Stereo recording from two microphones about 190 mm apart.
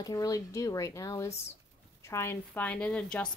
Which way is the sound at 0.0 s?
20° left (ahead or behind).